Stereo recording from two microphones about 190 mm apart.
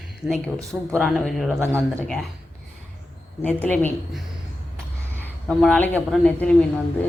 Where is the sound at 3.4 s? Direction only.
10° left (ahead or behind).